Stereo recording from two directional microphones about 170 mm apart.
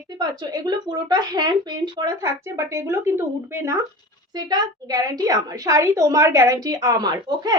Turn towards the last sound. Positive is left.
turn(degrees=-25)  # may be behind; listen again after turning